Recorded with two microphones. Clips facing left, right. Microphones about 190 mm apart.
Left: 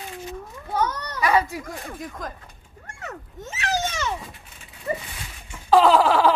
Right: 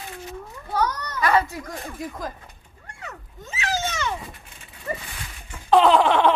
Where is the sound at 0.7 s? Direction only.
25° left (ahead or behind).